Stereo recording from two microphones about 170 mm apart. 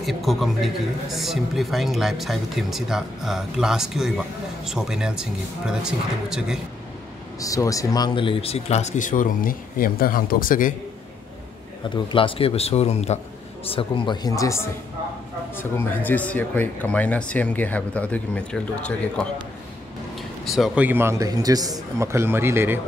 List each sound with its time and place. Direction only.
0.0 s speech: centre (ahead or behind)
7.3 s speech: 20° left (ahead or behind); by 10.7 s 55° left (ahead or behind)
11.9 s speech: 30° left (ahead or behind); by 19.2 s 5° left (ahead or behind)
20.4 s a man's voice: centre (ahead or behind)